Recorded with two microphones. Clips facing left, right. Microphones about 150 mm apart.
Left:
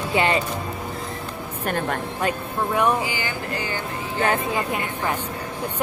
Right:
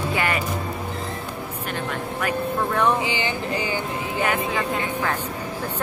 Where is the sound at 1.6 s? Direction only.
50° left (ahead or behind).